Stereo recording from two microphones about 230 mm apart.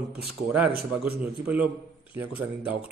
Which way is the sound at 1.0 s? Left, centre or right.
Centre.